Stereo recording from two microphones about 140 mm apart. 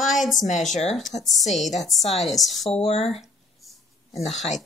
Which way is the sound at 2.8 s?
45° left (ahead or behind).